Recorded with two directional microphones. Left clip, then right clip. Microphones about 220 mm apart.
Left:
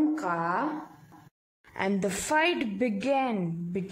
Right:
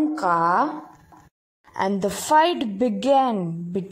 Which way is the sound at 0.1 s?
20° right (ahead or behind).